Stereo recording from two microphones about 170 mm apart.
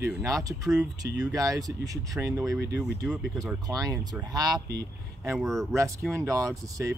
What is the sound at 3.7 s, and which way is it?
Speech, 20° right (ahead or behind).